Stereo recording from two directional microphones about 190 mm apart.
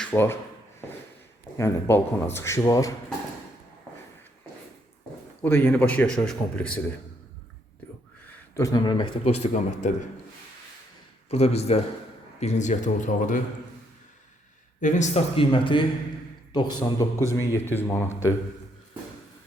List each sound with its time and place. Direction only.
0.0 s speech: 10° left (ahead or behind)
1.5 s speech: 15° left (ahead or behind)
5.4 s speech: 10° left (ahead or behind)
8.5 s a man's voice: 20° left (ahead or behind)
9.2 s a man's voice: 35° left (ahead or behind)
11.3 s a man's voice: 35° left (ahead or behind)
14.8 s a man's voice: 40° left (ahead or behind); by 18.3 s 15° left (ahead or behind)